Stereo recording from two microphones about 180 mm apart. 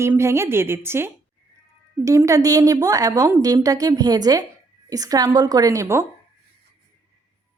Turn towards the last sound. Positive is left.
turn(degrees=-15)  # may be behind; listen again after turning